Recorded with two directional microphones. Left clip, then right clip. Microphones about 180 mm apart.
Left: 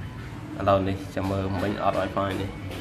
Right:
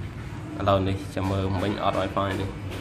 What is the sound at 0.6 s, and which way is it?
Speech, centre (ahead or behind).